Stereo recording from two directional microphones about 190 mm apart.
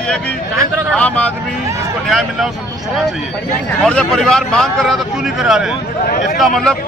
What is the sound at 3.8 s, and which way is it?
A man's voice, 5° left (ahead or behind).